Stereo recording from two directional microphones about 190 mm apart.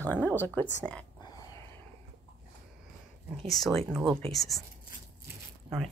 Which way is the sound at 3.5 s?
Centre (ahead or behind).